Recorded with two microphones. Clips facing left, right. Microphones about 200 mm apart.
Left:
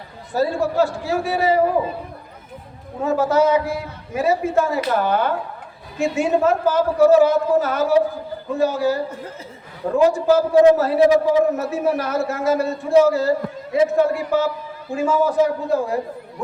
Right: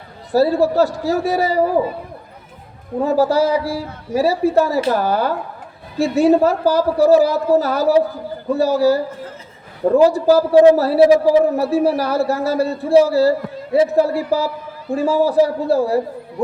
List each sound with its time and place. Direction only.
0.3 s a man's voice: 35° right (ahead or behind)
3.0 s a man's voice: 35° right (ahead or behind)